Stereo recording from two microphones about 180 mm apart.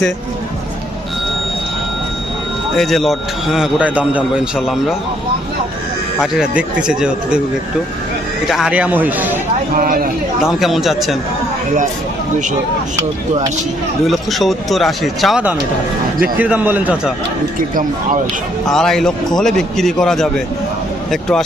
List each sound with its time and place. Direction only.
2.7 s a man's voice: centre (ahead or behind)
6.1 s a man's voice: 5° right (ahead or behind)
8.4 s speech: centre (ahead or behind)
9.7 s speech: 50° right (ahead or behind)
10.4 s a man's voice: centre (ahead or behind)
14.1 s a man's voice: centre (ahead or behind)
18.7 s a man's voice: centre (ahead or behind)